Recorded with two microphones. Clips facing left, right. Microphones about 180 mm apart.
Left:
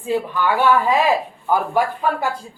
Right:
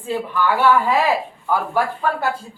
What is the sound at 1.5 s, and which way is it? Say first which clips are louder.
Speech: left 2 dB; 15° left (ahead or behind).